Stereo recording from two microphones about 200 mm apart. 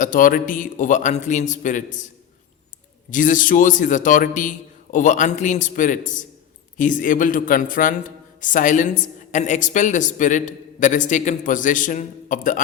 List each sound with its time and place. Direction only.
0.0 s a woman's voice: 45° left (ahead or behind)
3.1 s a woman's voice: 40° left (ahead or behind)